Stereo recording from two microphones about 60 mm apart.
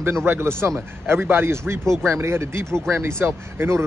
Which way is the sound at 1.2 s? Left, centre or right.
Right.